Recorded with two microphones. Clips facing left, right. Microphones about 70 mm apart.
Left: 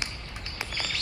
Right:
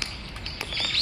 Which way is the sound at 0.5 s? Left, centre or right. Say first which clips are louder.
Right 1 dB; left.